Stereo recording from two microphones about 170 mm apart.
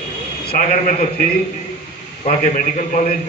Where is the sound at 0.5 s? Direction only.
50° left (ahead or behind).